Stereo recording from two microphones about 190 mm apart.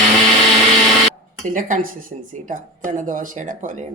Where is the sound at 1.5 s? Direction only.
45° right (ahead or behind).